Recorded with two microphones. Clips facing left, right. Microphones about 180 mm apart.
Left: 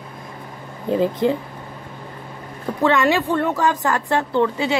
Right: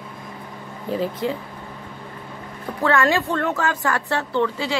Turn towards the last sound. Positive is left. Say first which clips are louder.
# left 3 dB
turn(degrees=15)  # may be behind; listen again after turning